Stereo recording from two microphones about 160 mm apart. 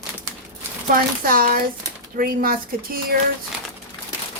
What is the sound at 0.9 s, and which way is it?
Speech, 65° right (ahead or behind).